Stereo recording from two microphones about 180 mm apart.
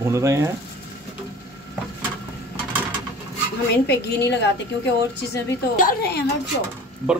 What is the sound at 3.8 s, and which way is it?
Speech, 70° left (ahead or behind).